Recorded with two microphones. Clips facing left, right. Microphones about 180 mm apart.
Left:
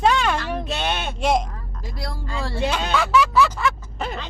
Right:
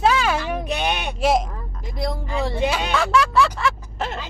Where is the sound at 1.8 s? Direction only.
20° right (ahead or behind).